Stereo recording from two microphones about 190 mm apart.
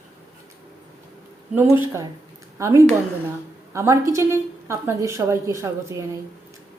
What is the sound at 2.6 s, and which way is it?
A woman's voice, 15° right (ahead or behind).